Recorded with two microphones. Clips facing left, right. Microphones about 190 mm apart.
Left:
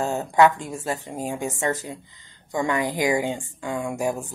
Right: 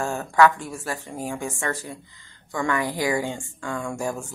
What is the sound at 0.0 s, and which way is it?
A woman's voice, 20° left (ahead or behind).